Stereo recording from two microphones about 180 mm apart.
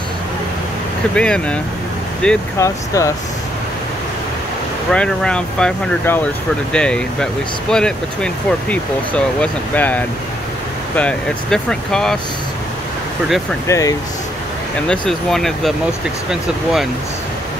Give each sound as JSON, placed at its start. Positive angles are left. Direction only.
{"t": 1.1, "sound": "speech", "side_deg": 5}
{"t": 2.6, "sound": "speech", "side_deg": 15}
{"t": 4.9, "sound": "speech", "side_deg": 5}
{"t": 13.7, "sound": "speech", "side_deg": 20}
{"t": 14.9, "sound": "speech", "side_deg": 0}